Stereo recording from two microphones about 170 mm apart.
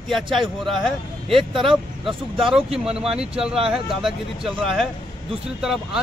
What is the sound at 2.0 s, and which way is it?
Speech, centre (ahead or behind).